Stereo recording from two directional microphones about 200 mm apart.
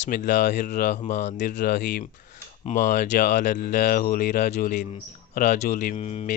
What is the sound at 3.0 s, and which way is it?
Speech, 45° left (ahead or behind).